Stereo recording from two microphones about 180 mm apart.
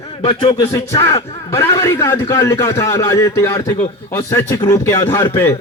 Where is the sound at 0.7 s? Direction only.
15° left (ahead or behind).